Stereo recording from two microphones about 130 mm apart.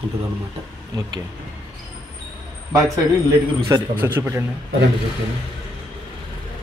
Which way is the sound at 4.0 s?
20° right (ahead or behind).